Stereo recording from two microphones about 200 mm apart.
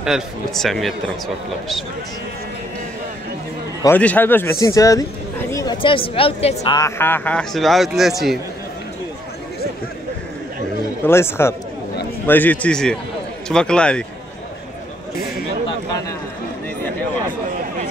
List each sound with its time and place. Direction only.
0.0 s a man's voice: centre (ahead or behind)
3.8 s a man's voice: 10° left (ahead or behind); by 6.6 s 30° left (ahead or behind)
6.6 s a man's voice: 20° left (ahead or behind); by 8.1 s centre (ahead or behind)
11.1 s a man's voice: 10° left (ahead or behind)